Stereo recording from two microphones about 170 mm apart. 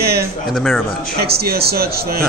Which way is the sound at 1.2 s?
70° right (ahead or behind).